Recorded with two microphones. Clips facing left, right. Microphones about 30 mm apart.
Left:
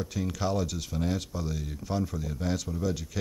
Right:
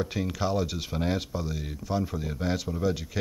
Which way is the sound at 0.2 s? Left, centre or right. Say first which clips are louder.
Even; centre.